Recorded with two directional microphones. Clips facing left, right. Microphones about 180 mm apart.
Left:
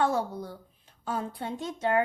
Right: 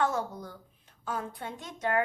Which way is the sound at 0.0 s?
30° left (ahead or behind).